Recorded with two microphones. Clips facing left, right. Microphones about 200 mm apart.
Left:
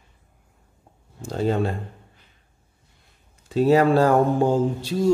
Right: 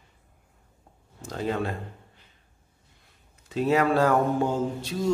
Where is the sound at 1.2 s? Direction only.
30° left (ahead or behind).